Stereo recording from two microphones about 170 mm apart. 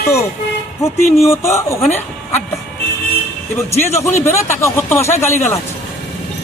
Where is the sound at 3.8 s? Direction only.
15° left (ahead or behind).